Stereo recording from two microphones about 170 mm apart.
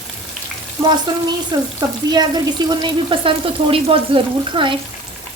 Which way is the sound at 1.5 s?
25° right (ahead or behind).